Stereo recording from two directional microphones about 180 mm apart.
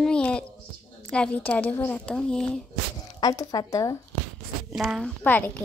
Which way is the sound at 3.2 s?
20° left (ahead or behind).